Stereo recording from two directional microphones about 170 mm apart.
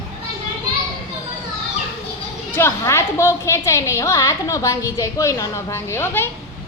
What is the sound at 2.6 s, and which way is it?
A woman's voice, 15° left (ahead or behind).